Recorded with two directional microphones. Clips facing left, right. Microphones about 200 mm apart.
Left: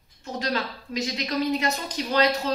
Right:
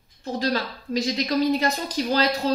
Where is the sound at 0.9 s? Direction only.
35° right (ahead or behind).